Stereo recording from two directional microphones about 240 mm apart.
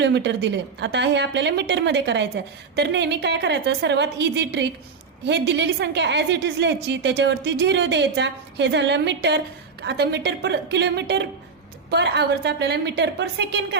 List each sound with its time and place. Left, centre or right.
0.0 s a woman's voice: right